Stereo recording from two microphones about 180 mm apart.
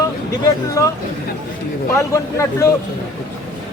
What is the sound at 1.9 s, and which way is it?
Speech, 15° left (ahead or behind).